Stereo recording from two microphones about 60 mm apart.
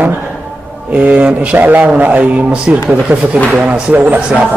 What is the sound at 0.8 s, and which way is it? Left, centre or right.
A man's voice, right.